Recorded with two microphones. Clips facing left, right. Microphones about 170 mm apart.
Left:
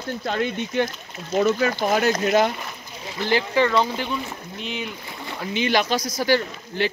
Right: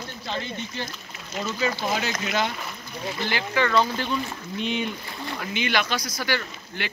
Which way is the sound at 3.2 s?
30° left (ahead or behind).